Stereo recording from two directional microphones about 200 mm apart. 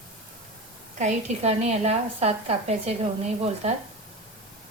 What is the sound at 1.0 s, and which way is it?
A woman's voice, 35° right (ahead or behind).